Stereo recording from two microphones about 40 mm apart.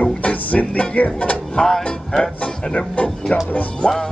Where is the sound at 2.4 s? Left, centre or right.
Left.